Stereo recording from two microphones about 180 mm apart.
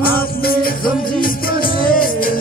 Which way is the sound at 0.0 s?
55° left (ahead or behind).